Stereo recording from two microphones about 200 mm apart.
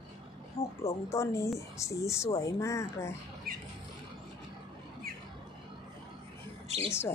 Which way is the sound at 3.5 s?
50° right (ahead or behind).